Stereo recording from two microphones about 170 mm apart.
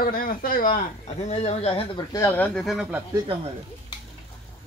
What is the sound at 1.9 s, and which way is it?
Speech, 20° left (ahead or behind).